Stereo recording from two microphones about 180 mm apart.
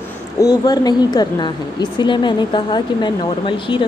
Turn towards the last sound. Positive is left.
turn(degrees=25)  # may be behind; listen again after turning